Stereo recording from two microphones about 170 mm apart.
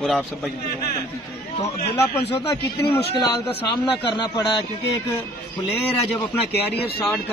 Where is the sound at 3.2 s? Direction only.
25° left (ahead or behind).